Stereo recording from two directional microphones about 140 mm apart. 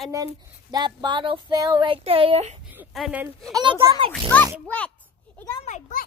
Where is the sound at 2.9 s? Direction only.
Centre (ahead or behind).